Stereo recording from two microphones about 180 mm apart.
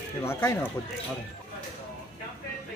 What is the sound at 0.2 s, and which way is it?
Speech, 15° left (ahead or behind).